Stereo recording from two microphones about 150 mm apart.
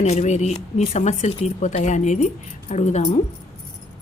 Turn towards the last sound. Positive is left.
turn(degrees=50)  # may be behind; listen again after turning